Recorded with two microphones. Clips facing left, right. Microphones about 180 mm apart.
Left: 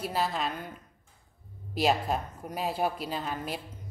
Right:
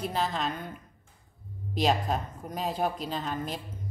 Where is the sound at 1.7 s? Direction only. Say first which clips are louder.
Even; 5° left (ahead or behind).